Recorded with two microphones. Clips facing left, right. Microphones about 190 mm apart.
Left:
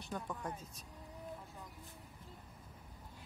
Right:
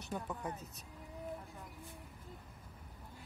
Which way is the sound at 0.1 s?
5° right (ahead or behind).